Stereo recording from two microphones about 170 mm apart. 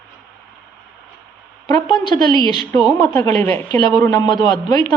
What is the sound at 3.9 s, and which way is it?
Speech, 20° left (ahead or behind).